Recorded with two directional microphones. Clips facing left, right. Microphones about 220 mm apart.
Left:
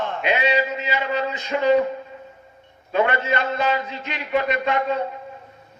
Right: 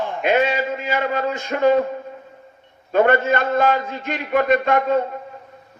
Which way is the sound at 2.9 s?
50° right (ahead or behind).